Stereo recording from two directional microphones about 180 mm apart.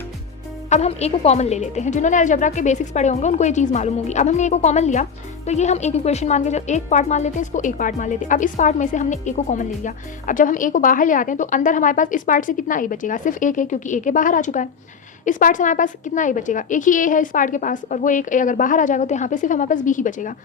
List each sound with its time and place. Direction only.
0.7 s a woman's voice: 35° left (ahead or behind)